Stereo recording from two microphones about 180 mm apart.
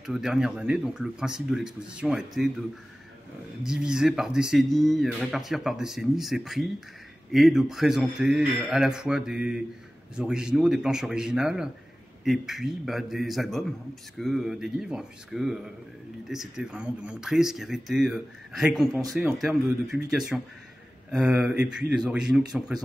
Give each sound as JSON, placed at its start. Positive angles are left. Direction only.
{"t": 0.0, "sound": "speech", "side_deg": 0}
{"t": 3.6, "sound": "speech", "side_deg": -5}